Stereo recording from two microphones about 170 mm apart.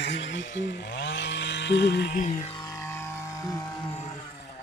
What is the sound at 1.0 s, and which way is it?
Chainsaw, 90° left.